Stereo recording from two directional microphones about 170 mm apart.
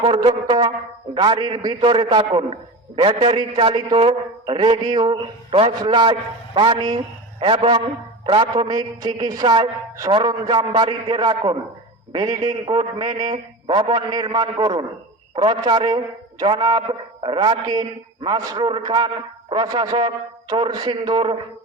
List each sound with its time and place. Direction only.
0.0 s a man's voice: 30° right (ahead or behind)